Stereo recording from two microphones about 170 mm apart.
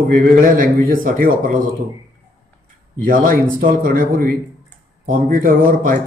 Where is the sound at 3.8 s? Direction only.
55° right (ahead or behind).